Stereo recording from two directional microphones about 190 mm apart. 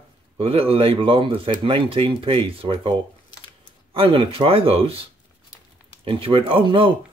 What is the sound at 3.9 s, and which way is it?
Speech, 30° right (ahead or behind).